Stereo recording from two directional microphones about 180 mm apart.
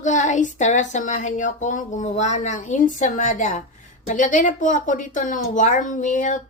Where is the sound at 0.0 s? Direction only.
45° left (ahead or behind).